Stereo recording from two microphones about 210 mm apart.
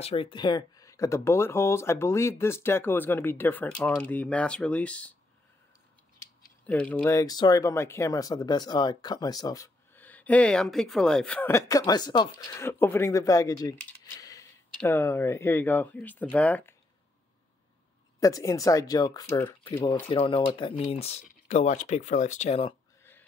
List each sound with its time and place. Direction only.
0.0 s speech: 25° left (ahead or behind); by 5.1 s 5° left (ahead or behind)
6.6 s speech: 5° left (ahead or behind)
18.2 s speech: 15° left (ahead or behind)
19.6 s speech: 25° left (ahead or behind)